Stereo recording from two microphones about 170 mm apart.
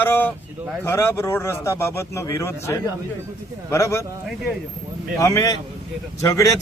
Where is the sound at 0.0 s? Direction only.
10° left (ahead or behind).